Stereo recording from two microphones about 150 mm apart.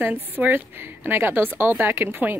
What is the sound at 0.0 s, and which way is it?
A woman's voice, 10° right (ahead or behind).